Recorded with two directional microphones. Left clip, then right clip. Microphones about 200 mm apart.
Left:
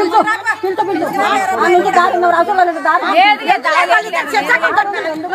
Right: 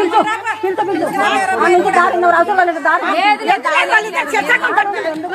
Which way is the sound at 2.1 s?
5° right (ahead or behind).